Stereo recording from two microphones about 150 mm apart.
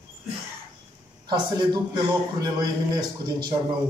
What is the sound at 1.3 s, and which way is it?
A man's voice, 30° right (ahead or behind).